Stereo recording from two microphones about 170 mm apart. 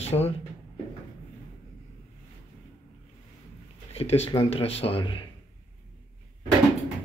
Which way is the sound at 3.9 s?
35° left (ahead or behind).